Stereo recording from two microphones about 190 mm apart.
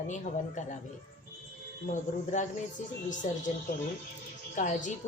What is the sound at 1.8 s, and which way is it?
Cricket, 40° left (ahead or behind).